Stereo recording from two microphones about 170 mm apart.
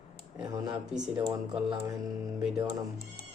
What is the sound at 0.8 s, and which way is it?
Speech, 5° right (ahead or behind).